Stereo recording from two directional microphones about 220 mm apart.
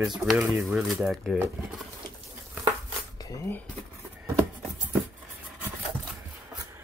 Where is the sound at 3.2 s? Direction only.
10° left (ahead or behind).